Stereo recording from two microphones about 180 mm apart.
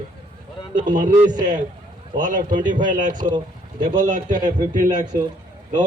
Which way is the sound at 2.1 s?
45° right (ahead or behind).